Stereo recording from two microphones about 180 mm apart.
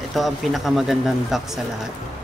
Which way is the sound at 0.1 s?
Centre (ahead or behind).